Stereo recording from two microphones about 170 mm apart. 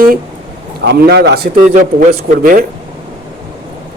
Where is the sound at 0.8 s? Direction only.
70° right (ahead or behind).